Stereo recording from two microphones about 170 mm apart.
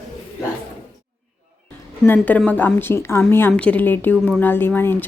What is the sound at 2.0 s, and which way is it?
A woman's voice, 10° left (ahead or behind).